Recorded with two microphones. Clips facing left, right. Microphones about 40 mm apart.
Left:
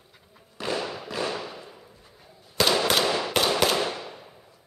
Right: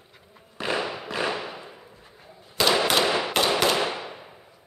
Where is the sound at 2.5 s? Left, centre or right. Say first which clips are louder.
Right 1 dB; centre.